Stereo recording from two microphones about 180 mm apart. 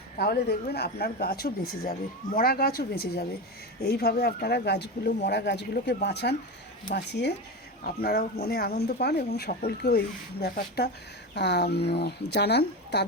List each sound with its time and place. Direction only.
0.2 s speech: 60° left (ahead or behind)
7.9 s speech: 55° left (ahead or behind)